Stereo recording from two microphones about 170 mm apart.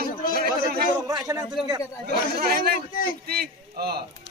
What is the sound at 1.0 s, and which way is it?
Speech, 20° right (ahead or behind).